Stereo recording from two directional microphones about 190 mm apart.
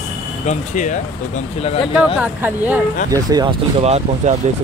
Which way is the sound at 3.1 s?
20° right (ahead or behind).